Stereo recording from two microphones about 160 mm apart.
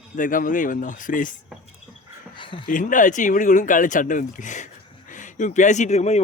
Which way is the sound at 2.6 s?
55° left (ahead or behind).